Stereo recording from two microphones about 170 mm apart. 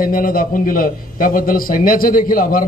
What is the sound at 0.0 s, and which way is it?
A man's voice, 55° left (ahead or behind).